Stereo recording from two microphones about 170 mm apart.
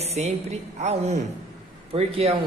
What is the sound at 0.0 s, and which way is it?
A woman's voice, 40° right (ahead or behind).